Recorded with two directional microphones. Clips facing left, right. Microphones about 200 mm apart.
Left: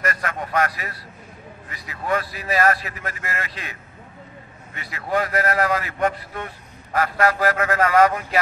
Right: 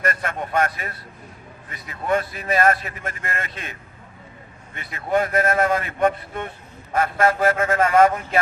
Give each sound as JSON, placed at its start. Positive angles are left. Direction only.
{"t": 0.0, "sound": "a man's voice", "side_deg": -25}
{"t": 2.0, "sound": "a man's voice", "side_deg": -25}
{"t": 5.1, "sound": "a man's voice", "side_deg": -25}